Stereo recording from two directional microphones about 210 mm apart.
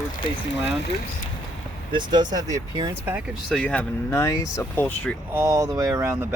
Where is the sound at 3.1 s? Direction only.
Centre (ahead or behind).